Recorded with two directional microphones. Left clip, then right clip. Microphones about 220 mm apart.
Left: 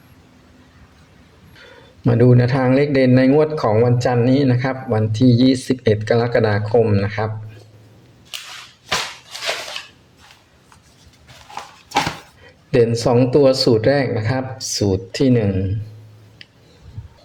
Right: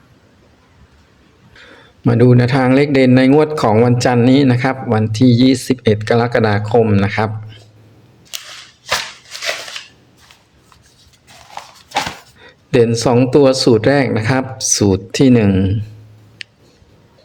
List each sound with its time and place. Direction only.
2.0 s a man's voice: 15° right (ahead or behind)
12.5 s a man's voice: 15° right (ahead or behind)